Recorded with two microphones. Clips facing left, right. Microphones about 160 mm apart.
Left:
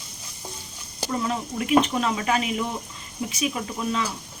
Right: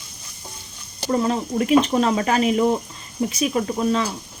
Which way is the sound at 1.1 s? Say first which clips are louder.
Right 7 dB; 40° right (ahead or behind).